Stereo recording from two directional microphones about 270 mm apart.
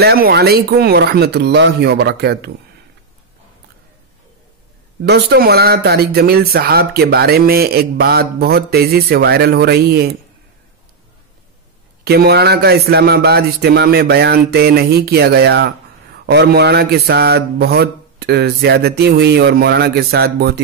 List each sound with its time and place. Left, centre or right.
0.0 s speech: right
5.0 s speech: right
12.0 s speech: right